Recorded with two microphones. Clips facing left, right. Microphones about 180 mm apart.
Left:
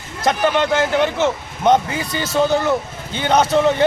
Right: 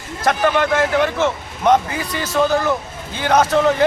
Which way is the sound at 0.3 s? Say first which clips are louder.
Even; 20° left (ahead or behind).